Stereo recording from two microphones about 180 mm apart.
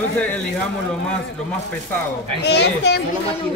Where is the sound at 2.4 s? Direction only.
70° left (ahead or behind).